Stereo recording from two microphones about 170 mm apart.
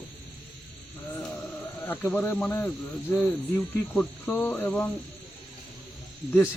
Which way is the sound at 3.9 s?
10° left (ahead or behind).